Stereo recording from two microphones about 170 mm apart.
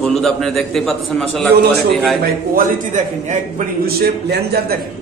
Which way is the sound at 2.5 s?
45° right (ahead or behind).